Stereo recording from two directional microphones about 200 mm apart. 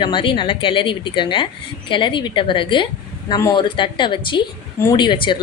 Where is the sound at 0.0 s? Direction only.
25° left (ahead or behind).